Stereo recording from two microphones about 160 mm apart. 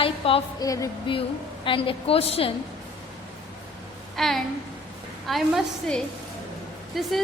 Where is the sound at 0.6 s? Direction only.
20° left (ahead or behind).